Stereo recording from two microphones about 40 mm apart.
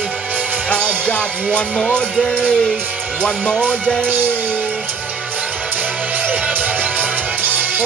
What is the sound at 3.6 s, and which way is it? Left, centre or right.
Speech, left.